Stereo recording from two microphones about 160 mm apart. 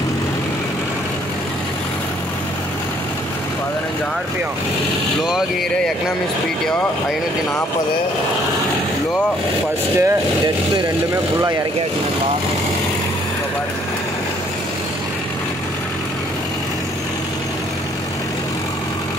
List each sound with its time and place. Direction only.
9.9 s speech: 15° right (ahead or behind)